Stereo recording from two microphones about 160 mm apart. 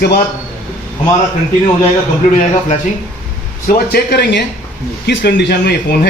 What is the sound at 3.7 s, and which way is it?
Speech, 80° left.